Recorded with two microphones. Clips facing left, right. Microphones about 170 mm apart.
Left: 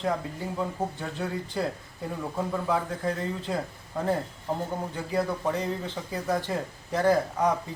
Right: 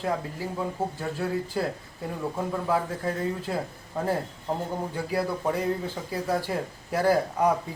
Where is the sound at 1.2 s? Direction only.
5° right (ahead or behind).